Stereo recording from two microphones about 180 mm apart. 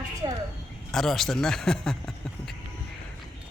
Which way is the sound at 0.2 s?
25° right (ahead or behind).